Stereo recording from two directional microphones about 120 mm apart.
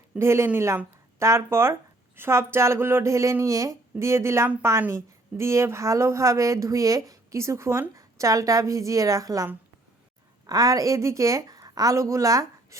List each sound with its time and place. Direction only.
0.2 s speech: 20° right (ahead or behind)